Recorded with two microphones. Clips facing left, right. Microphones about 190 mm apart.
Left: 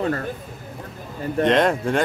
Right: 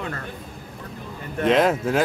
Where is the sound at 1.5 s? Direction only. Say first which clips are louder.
Right 1 dB; 5° right (ahead or behind).